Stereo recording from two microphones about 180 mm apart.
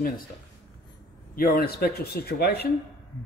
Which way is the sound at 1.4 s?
55° left (ahead or behind).